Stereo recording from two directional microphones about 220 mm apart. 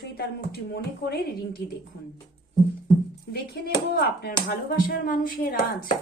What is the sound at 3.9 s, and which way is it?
Speech, 45° left (ahead or behind).